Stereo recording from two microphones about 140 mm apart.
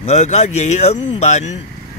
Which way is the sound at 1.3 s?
55° left (ahead or behind).